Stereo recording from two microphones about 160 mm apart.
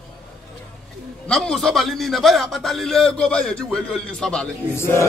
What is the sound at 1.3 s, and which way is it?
A man's voice, 5° left (ahead or behind).